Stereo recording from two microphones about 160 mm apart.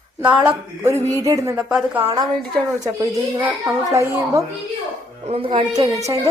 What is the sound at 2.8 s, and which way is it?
A woman's voice, 20° right (ahead or behind).